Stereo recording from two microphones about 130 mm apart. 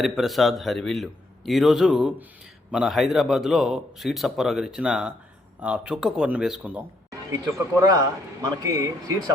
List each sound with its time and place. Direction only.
0.0 s a man's voice: centre (ahead or behind)
7.3 s a man's voice: 25° right (ahead or behind)